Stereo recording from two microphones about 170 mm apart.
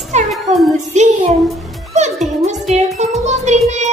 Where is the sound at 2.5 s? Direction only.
45° right (ahead or behind).